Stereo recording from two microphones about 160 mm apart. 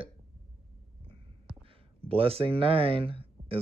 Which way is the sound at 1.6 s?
35° right (ahead or behind).